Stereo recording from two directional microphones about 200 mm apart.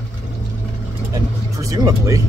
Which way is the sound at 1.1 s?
15° right (ahead or behind).